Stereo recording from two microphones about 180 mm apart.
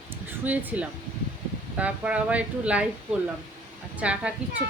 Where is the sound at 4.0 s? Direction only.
5° right (ahead or behind).